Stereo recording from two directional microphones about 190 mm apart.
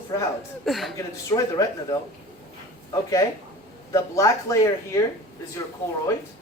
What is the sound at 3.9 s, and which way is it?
Speech, 15° left (ahead or behind).